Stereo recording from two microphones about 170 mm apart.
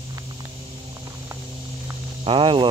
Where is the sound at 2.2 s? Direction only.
30° right (ahead or behind).